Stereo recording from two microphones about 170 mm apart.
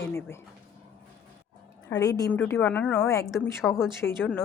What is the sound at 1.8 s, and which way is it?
A woman's voice, 15° left (ahead or behind).